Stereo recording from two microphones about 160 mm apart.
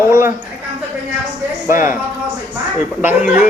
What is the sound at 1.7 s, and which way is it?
Speech, 55° left (ahead or behind).